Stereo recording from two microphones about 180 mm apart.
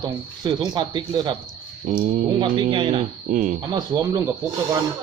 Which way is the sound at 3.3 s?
50° right (ahead or behind).